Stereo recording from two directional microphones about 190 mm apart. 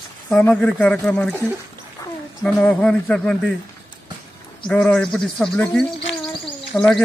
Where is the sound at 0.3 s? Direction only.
5° left (ahead or behind).